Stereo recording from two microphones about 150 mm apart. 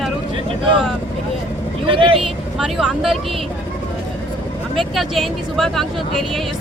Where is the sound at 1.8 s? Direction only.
35° right (ahead or behind).